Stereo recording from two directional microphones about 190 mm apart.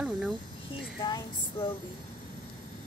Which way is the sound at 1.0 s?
25° left (ahead or behind).